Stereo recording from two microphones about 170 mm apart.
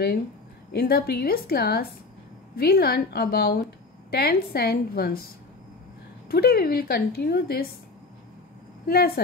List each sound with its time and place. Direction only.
0.7 s a woman's voice: 65° left (ahead or behind)
6.2 s a woman's voice: 65° left (ahead or behind)
8.8 s a woman's voice: 65° left (ahead or behind)